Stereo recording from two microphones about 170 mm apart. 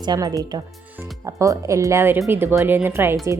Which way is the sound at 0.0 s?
25° right (ahead or behind).